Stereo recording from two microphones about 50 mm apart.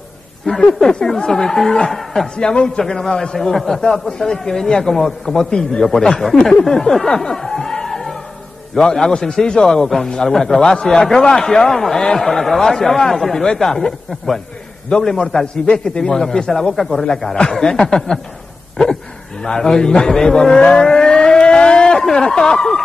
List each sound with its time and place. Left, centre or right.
0.5 s a man's voice: centre
2.3 s a man's voice: centre
6.6 s music: centre
8.7 s a man's voice: centre
19.4 s a man's voice: centre